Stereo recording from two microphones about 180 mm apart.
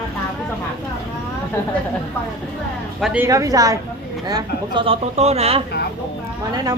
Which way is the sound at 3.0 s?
5° right (ahead or behind).